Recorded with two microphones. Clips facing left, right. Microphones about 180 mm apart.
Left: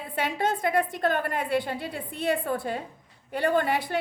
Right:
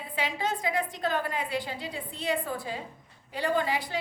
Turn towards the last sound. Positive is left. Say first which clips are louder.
# left 4 dB
turn(degrees=55)  # may be behind; listen again after turning